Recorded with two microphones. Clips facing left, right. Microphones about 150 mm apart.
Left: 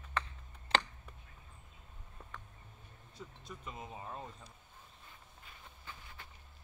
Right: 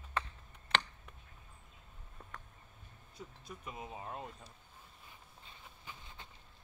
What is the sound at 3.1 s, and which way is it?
Speech, 10° right (ahead or behind).